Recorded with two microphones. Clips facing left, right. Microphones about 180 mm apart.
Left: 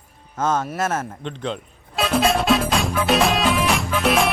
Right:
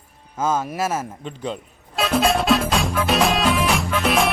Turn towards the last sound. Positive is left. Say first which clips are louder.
# even
turn(degrees=0)  # may be behind; listen again after turning